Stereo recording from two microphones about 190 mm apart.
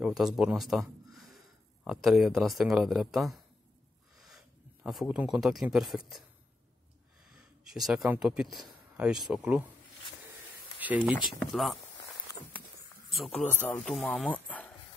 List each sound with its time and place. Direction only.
0.0 s speech: 5° right (ahead or behind)
7.2 s speech: centre (ahead or behind)
10.8 s speech: 10° right (ahead or behind)
13.1 s speech: centre (ahead or behind)